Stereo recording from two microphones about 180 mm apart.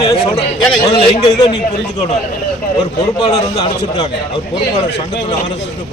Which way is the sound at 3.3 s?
20° left (ahead or behind).